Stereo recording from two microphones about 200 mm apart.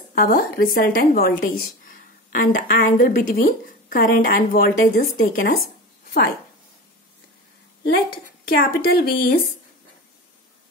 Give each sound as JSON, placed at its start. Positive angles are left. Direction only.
{"t": 0.1, "sound": "a woman's voice", "side_deg": 45}
{"t": 7.8, "sound": "a woman's voice", "side_deg": 50}